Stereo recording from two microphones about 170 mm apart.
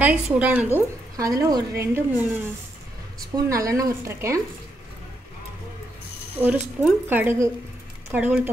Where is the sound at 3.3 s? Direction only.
20° right (ahead or behind).